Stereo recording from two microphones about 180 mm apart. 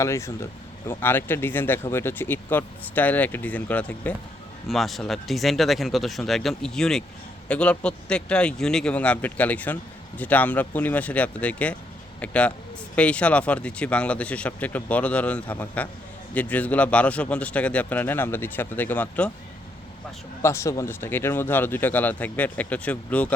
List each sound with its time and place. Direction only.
0.0 s speech: 15° left (ahead or behind)
20.4 s speech: 15° left (ahead or behind)